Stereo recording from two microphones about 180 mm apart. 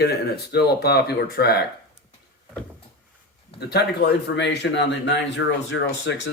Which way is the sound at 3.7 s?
65° left (ahead or behind).